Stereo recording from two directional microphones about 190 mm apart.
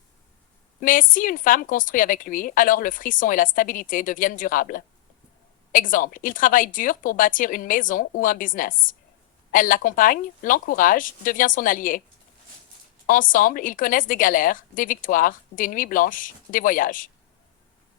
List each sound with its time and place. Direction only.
0.8 s a woman's voice: 45° left (ahead or behind)
13.1 s a woman's voice: 45° left (ahead or behind)